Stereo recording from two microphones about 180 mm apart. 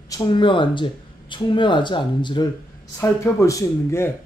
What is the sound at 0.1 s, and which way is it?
Speech, 25° left (ahead or behind).